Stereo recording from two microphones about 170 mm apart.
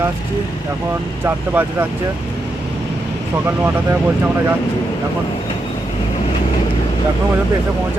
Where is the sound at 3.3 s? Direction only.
10° right (ahead or behind).